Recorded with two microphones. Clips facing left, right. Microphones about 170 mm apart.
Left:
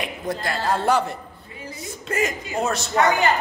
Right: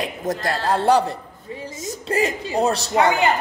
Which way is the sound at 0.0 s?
40° right (ahead or behind).